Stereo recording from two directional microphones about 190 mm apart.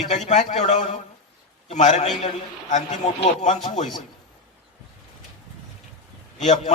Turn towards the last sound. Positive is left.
turn(degrees=40)  # may be behind; listen again after turning